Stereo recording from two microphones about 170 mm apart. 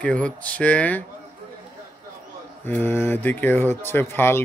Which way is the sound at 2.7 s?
15° left (ahead or behind).